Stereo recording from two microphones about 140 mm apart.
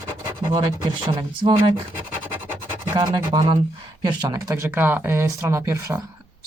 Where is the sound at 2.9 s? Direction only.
35° right (ahead or behind).